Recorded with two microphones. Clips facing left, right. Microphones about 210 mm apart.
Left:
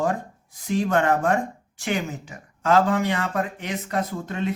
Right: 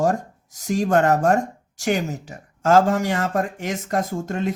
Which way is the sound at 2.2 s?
40° right (ahead or behind).